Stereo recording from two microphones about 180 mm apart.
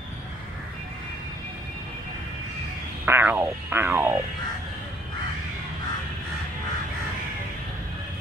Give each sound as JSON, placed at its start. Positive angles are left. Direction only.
{"t": 3.1, "sound": "music", "side_deg": -10}